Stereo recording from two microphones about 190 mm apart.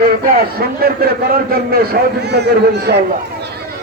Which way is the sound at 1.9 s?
60° right (ahead or behind).